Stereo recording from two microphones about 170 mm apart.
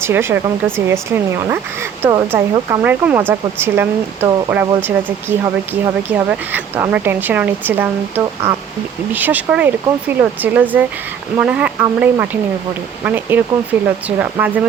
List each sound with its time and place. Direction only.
0.0 s speech: 15° right (ahead or behind)